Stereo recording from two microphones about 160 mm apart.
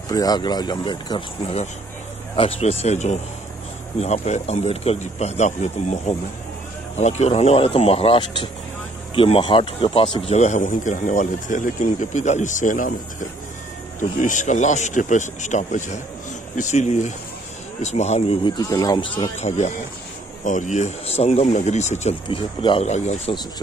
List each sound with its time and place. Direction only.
0.1 s speech: 25° left (ahead or behind); by 18.4 s 45° left (ahead or behind)
18.4 s speech: 25° left (ahead or behind)
19.3 s speech: 45° left (ahead or behind)
22.8 s speech: 45° left (ahead or behind)